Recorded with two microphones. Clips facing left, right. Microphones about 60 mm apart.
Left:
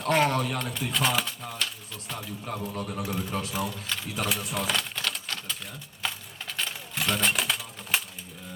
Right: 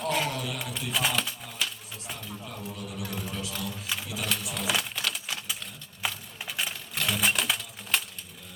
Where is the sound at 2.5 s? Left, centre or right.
Left.